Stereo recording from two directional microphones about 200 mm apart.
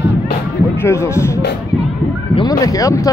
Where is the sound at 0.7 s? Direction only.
10° left (ahead or behind).